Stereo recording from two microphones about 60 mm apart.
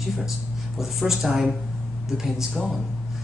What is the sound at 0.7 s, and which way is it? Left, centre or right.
Speech, centre.